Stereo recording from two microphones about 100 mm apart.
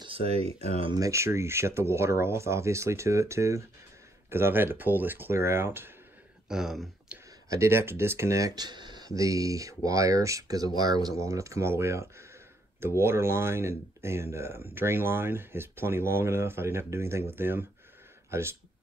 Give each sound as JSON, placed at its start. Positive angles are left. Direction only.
{"t": 0.0, "sound": "speech", "side_deg": -75}
{"t": 0.9, "sound": "speech", "side_deg": -30}
{"t": 6.5, "sound": "speech", "side_deg": -5}
{"t": 7.4, "sound": "speech", "side_deg": -30}